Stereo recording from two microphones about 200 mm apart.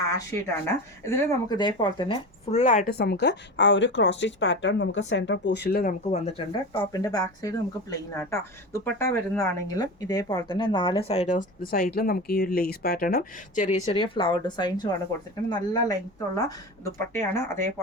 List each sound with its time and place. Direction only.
0.0 s speech: 15° left (ahead or behind)
2.5 s speech: 35° left (ahead or behind); by 17.6 s 15° left (ahead or behind)